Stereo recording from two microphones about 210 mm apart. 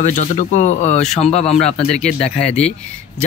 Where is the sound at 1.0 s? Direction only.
Centre (ahead or behind).